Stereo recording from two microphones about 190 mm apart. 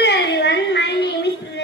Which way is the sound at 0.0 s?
65° left (ahead or behind).